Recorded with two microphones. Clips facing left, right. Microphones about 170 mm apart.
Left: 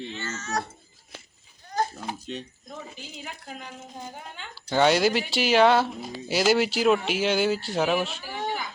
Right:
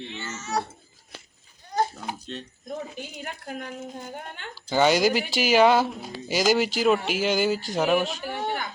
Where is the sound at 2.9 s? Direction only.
60° right (ahead or behind).